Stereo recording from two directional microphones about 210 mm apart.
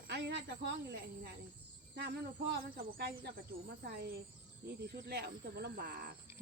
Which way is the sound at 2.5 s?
50° right (ahead or behind).